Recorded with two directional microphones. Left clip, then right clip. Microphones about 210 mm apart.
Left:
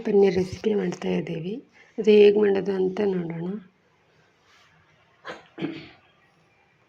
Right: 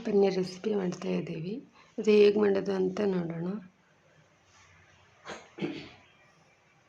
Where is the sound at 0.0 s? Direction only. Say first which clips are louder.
Left 6 dB; 10° left (ahead or behind).